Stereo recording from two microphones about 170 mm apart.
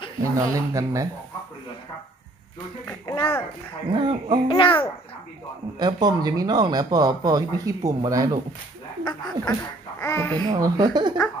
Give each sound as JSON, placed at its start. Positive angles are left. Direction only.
{"t": 0.2, "sound": "speech", "side_deg": -15}
{"t": 2.8, "sound": "a child's voice", "side_deg": 15}
{"t": 3.9, "sound": "speech", "side_deg": -30}
{"t": 4.5, "sound": "a child's voice", "side_deg": 30}
{"t": 5.8, "sound": "speech", "side_deg": -25}
{"t": 9.0, "sound": "a child's voice", "side_deg": 20}
{"t": 10.4, "sound": "speech", "side_deg": -25}